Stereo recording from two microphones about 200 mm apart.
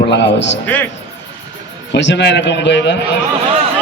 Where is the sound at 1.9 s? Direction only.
65° left (ahead or behind).